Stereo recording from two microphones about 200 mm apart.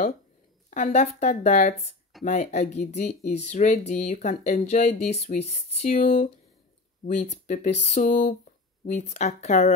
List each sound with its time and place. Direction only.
0.7 s speech: 35° left (ahead or behind)
5.9 s speech: 45° left (ahead or behind)